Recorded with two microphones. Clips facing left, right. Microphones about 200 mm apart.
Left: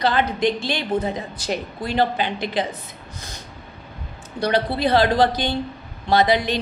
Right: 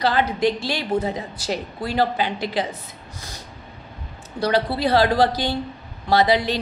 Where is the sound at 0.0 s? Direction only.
20° left (ahead or behind).